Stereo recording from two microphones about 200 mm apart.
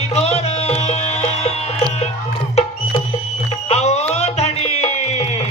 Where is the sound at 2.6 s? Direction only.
30° left (ahead or behind).